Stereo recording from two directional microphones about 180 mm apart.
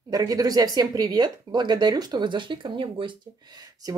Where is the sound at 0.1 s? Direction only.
20° right (ahead or behind).